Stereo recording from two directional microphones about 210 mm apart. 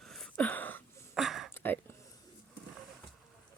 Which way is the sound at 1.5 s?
10° left (ahead or behind).